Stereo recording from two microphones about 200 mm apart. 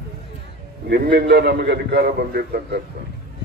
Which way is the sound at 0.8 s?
50° right (ahead or behind).